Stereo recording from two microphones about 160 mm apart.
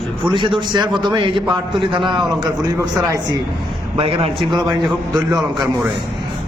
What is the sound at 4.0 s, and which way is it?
Speech, 35° right (ahead or behind).